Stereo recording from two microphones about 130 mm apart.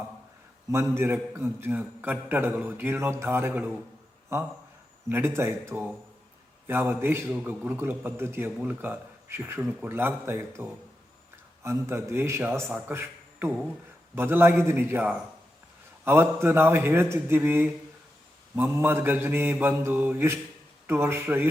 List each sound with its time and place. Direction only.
0.7 s a man's voice: 20° right (ahead or behind)
5.0 s a man's voice: 15° right (ahead or behind)
9.6 s speech: 5° right (ahead or behind)
9.9 s a man's voice: 15° right (ahead or behind)